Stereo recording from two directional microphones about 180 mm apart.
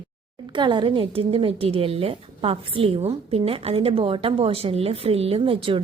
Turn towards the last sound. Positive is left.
turn(degrees=-30)  # may be behind; listen again after turning